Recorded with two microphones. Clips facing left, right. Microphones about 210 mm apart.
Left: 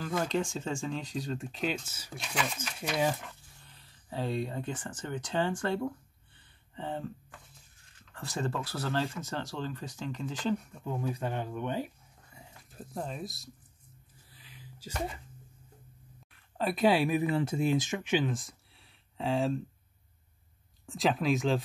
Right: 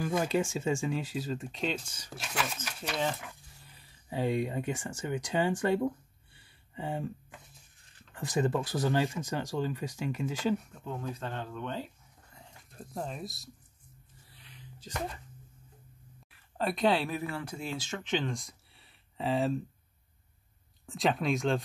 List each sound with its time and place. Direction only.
0.0 s speech: 10° right (ahead or behind)
2.8 s speech: 10° left (ahead or behind)
3.3 s a sound: 10° right (ahead or behind)
8.1 s speech: 15° right (ahead or behind)
10.7 s speech: 10° left (ahead or behind)
12.4 s a sound: 5° left (ahead or behind)
16.3 s speech: centre (ahead or behind)
20.8 s speech: centre (ahead or behind)